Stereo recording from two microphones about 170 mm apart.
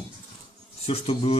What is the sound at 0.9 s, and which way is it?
Speech, 35° left (ahead or behind).